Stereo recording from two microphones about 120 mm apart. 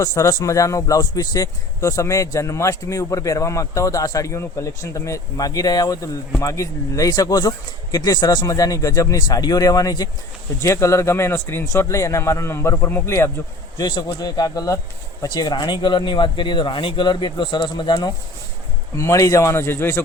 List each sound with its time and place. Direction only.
0.0 s speech: 25° left (ahead or behind)
13.7 s speech: 35° left (ahead or behind)
18.9 s speech: 25° left (ahead or behind)